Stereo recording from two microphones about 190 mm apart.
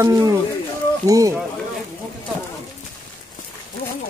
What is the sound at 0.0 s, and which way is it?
Speech, 20° right (ahead or behind).